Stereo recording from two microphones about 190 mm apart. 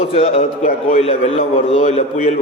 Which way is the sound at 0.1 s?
35° left (ahead or behind).